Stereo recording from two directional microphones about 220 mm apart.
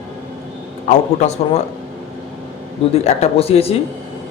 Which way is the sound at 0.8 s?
30° left (ahead or behind).